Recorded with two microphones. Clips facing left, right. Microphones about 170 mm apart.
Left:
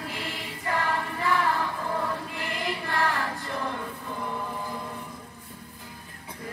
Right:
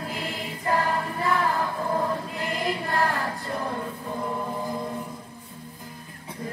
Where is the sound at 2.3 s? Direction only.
40° right (ahead or behind).